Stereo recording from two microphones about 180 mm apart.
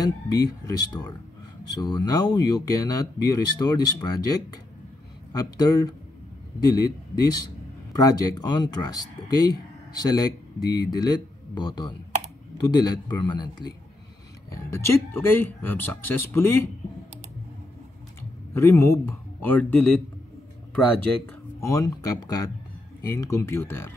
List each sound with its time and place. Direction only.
0.0 s speech: 20° left (ahead or behind)
18.5 s speech: 15° left (ahead or behind)
21.5 s speech: 15° left (ahead or behind)